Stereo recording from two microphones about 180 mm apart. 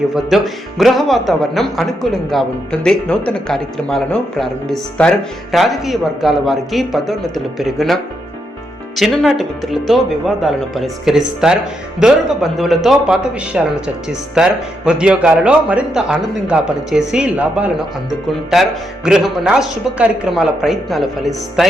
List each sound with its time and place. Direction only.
0.1 s speech: centre (ahead or behind)
9.0 s speech: centre (ahead or behind)